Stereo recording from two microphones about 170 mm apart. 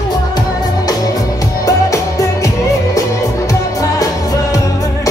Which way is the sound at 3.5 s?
20° left (ahead or behind).